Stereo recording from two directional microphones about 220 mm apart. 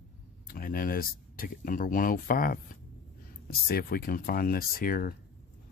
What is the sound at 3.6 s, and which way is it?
Speech, 40° left (ahead or behind).